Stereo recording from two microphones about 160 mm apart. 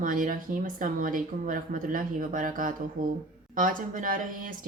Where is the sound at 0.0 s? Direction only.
55° right (ahead or behind).